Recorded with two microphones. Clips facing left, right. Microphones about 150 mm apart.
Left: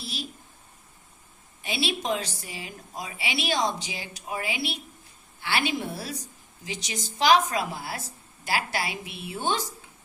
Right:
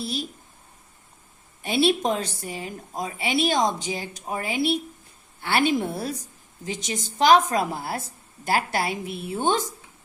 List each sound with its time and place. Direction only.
0.0 s a woman's voice: 50° right (ahead or behind)
1.6 s a woman's voice: 50° right (ahead or behind)